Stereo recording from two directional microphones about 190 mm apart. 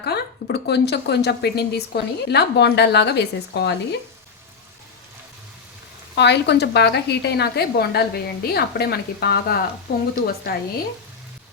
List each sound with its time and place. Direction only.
0.0 s speech: 60° left (ahead or behind)
6.1 s speech: 65° left (ahead or behind)